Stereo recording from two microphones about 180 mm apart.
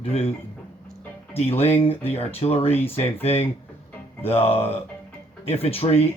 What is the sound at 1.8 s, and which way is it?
Speech, 35° left (ahead or behind).